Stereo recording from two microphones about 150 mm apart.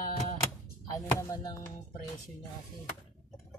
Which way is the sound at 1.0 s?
25° left (ahead or behind).